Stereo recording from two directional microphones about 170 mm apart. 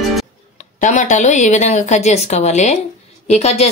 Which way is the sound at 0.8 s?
45° left (ahead or behind).